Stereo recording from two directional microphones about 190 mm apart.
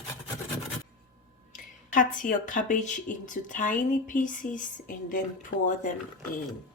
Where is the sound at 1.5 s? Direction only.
45° left (ahead or behind).